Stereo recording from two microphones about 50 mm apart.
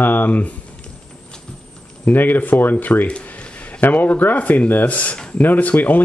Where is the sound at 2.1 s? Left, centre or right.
Left.